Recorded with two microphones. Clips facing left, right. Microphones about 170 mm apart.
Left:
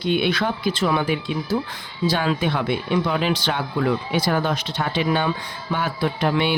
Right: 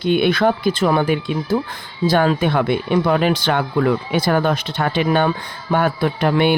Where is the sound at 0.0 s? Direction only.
50° right (ahead or behind).